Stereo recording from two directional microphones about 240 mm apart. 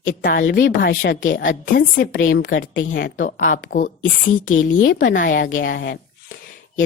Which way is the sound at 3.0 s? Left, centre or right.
Left.